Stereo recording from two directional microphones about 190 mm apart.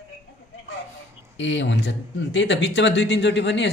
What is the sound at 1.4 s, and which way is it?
Speech, 70° left (ahead or behind).